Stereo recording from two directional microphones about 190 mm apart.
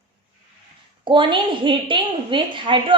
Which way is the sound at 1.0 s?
25° right (ahead or behind).